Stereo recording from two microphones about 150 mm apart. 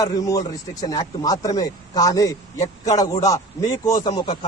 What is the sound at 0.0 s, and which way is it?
Speech, 25° left (ahead or behind).